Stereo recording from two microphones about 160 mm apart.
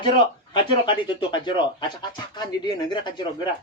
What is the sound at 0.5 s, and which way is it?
Speech, 30° left (ahead or behind).